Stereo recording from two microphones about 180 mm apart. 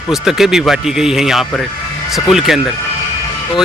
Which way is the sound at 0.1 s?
Centre (ahead or behind).